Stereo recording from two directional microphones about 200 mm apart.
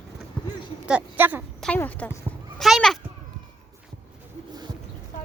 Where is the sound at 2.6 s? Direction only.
Centre (ahead or behind).